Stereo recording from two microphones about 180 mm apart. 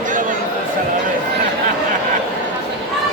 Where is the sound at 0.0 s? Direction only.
45° right (ahead or behind).